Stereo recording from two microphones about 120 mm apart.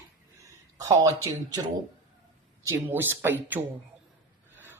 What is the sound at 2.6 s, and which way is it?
Speech, 20° right (ahead or behind).